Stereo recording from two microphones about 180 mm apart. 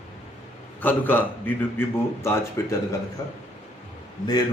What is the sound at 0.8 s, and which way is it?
A man's voice, 10° left (ahead or behind).